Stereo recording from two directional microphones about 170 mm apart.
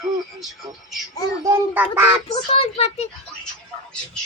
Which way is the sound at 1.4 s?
10° right (ahead or behind).